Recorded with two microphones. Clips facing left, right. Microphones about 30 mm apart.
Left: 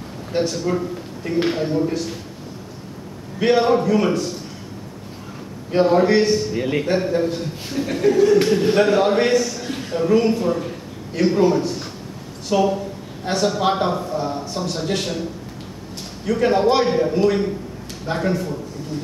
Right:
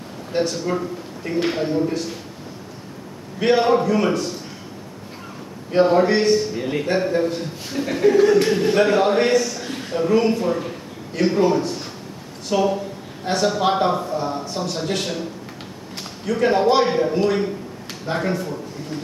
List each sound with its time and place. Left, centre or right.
0.3 s a man's voice: centre
3.3 s a man's voice: centre
5.7 s a man's voice: centre
6.5 s a man's voice: left
6.8 s a man's voice: centre
16.3 s a man's voice: centre